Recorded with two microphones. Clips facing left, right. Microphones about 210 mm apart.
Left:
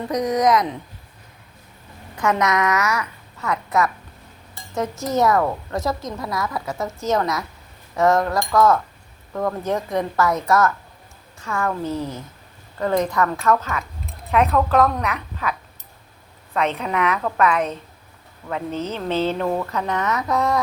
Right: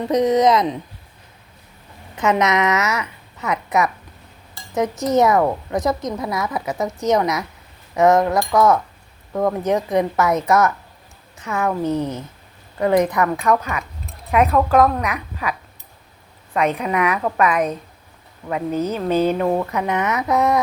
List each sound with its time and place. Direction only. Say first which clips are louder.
0.1 s a woman's voice: right 3 dB; 25° right (ahead or behind)
2.1 s a woman's voice: right 2 dB; 20° right (ahead or behind)
16.6 s a woman's voice: right 3 dB; 10° right (ahead or behind)